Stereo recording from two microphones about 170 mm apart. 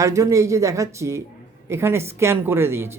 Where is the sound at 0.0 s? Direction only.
20° right (ahead or behind).